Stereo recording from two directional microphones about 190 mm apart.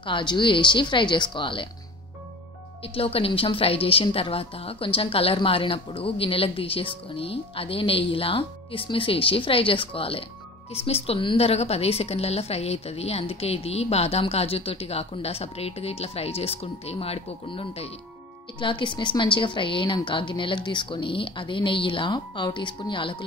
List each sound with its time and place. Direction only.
0.0 s a woman's voice: 25° left (ahead or behind)
2.9 s a woman's voice: 30° left (ahead or behind)